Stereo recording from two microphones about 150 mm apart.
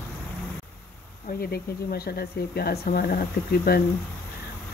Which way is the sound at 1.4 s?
90° left.